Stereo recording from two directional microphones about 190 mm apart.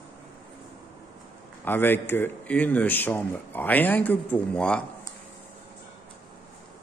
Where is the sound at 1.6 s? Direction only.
10° left (ahead or behind).